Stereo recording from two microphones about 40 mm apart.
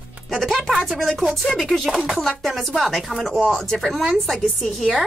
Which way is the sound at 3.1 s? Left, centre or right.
Centre.